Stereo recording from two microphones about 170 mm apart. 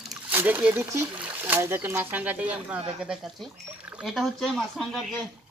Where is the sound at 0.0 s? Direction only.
Centre (ahead or behind).